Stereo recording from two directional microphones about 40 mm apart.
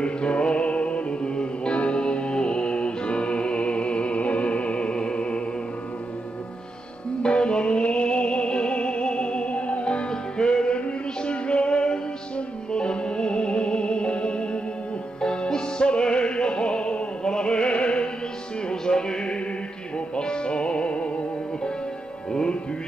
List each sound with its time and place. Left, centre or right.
0.0 s music: left
7.2 s music: left
22.3 s music: left